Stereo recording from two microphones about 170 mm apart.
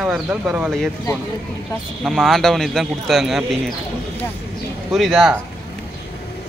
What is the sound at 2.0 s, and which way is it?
Speech, centre (ahead or behind).